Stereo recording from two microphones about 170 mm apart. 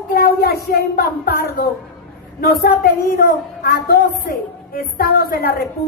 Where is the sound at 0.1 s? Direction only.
65° left (ahead or behind).